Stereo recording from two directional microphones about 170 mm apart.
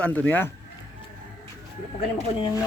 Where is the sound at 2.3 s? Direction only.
25° left (ahead or behind).